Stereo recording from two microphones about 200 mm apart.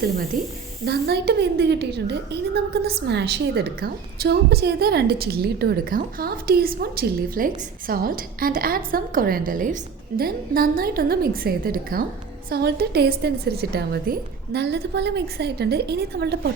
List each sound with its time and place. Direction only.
0.3 s a woman's voice: 45° right (ahead or behind)
0.9 s a woman's voice: 55° right (ahead or behind)